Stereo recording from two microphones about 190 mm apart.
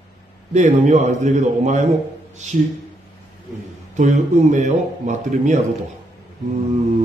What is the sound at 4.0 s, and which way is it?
Speech, 40° right (ahead or behind).